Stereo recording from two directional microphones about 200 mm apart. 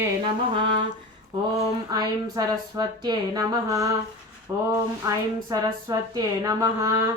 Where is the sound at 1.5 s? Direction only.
15° right (ahead or behind).